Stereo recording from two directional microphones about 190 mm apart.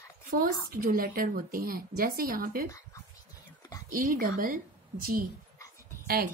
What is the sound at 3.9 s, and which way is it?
A woman's voice, 45° right (ahead or behind).